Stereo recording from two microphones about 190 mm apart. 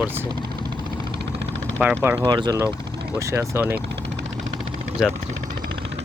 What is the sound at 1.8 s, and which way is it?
Speech, 10° right (ahead or behind).